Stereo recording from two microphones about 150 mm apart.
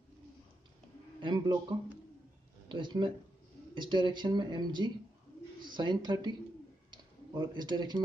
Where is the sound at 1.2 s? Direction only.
30° right (ahead or behind).